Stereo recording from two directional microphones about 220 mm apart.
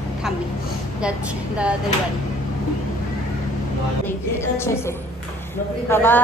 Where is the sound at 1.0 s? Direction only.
5° right (ahead or behind).